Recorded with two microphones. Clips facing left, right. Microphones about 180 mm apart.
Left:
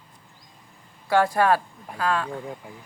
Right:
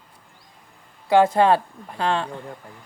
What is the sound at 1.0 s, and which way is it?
A woman's voice, 20° right (ahead or behind).